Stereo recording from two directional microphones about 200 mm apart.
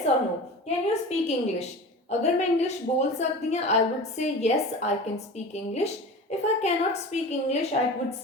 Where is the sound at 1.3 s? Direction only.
35° left (ahead or behind).